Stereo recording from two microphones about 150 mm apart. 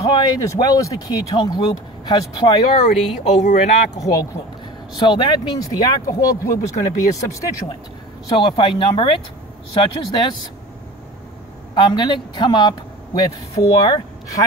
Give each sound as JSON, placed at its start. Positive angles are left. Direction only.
{"t": 0.1, "sound": "speech", "side_deg": 25}
{"t": 2.6, "sound": "speech", "side_deg": 50}
{"t": 3.9, "sound": "speech", "side_deg": 25}
{"t": 8.3, "sound": "speech", "side_deg": 35}
{"t": 11.7, "sound": "speech", "side_deg": 30}